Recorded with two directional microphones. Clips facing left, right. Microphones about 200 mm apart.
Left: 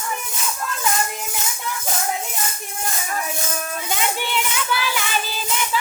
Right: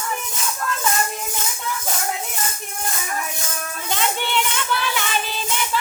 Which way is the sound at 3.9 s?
5° left (ahead or behind).